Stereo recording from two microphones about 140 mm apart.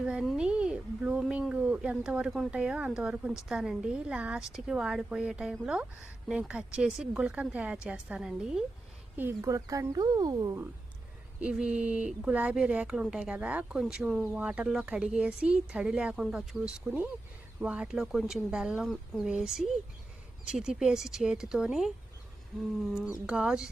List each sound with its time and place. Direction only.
0.0 s a woman's voice: 5° right (ahead or behind)
9.1 s speech: 20° right (ahead or behind)
11.3 s a woman's voice: 10° right (ahead or behind)
23.2 s a woman's voice: 5° right (ahead or behind)